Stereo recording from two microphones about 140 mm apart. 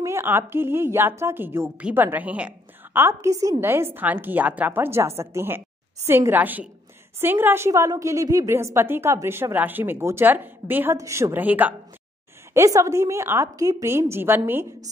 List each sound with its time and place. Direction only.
0.0 s a woman's voice: 15° right (ahead or behind)
12.5 s a woman's voice: 25° right (ahead or behind)